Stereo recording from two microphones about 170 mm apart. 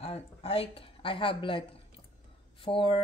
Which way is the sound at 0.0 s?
35° left (ahead or behind).